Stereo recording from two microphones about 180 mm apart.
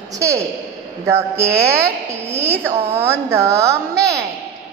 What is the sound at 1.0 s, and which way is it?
A woman's voice, 15° right (ahead or behind).